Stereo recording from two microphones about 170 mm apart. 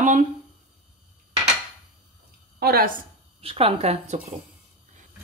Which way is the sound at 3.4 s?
35° right (ahead or behind).